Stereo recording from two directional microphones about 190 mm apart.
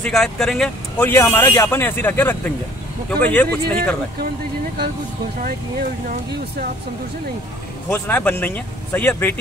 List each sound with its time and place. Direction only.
0.0 s a man's voice: centre (ahead or behind)
5.4 s speech: 45° right (ahead or behind)
7.9 s a man's voice: 10° left (ahead or behind)